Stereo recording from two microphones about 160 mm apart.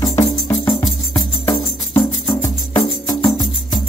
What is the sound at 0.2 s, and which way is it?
Music, 20° left (ahead or behind).